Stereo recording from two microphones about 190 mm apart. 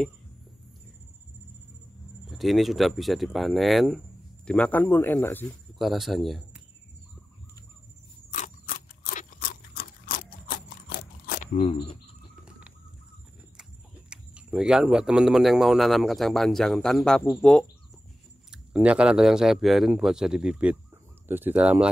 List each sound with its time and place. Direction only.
2.2 s speech: centre (ahead or behind)
5.8 s a man's voice: centre (ahead or behind)
8.3 s a sound: 45° left (ahead or behind)
12.4 s bird: 5° right (ahead or behind)
13.6 s speech: 5° right (ahead or behind)
18.5 s speech: 5° right (ahead or behind)